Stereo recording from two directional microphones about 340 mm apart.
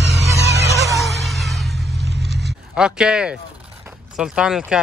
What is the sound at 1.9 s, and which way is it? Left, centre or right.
Vehicle, right.